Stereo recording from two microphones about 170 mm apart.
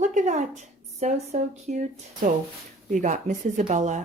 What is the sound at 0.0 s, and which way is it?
Speech, 45° right (ahead or behind).